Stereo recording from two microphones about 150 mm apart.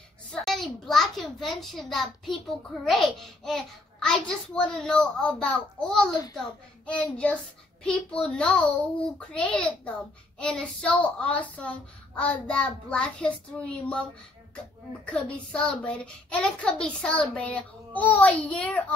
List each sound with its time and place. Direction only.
0.3 s a child's voice: centre (ahead or behind)
15.0 s a child's voice: 10° left (ahead or behind)